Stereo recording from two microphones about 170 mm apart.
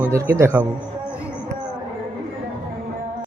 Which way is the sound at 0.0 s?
15° right (ahead or behind).